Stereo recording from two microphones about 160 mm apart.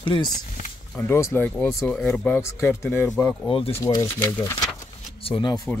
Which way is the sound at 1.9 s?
5° left (ahead or behind).